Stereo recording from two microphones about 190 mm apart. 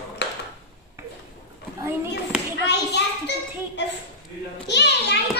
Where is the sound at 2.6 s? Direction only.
65° left (ahead or behind).